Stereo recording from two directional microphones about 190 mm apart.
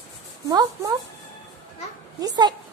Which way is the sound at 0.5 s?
20° right (ahead or behind).